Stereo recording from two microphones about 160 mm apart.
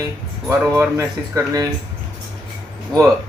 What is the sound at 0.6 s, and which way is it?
Speech, 10° right (ahead or behind).